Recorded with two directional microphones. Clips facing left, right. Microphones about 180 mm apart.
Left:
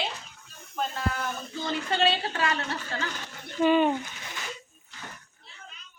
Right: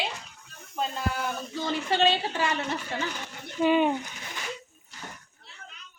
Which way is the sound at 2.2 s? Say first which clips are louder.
Right 1 dB; 15° right (ahead or behind).